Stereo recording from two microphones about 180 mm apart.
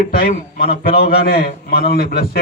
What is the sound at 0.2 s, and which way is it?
A man's voice, 60° left (ahead or behind).